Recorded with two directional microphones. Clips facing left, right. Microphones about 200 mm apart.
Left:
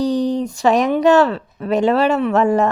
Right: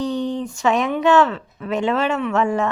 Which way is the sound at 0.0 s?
35° left (ahead or behind).